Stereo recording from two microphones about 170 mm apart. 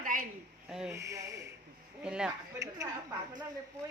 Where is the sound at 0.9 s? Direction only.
15° right (ahead or behind).